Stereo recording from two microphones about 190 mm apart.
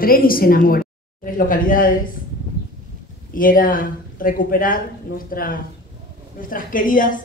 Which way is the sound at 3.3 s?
45° left (ahead or behind).